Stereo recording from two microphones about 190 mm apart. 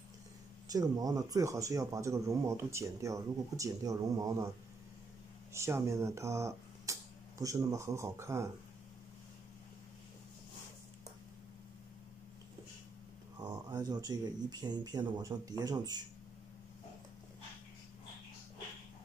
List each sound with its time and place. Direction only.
0.7 s speech: 20° right (ahead or behind)
5.5 s speech: 15° right (ahead or behind)
13.4 s speech: 20° right (ahead or behind)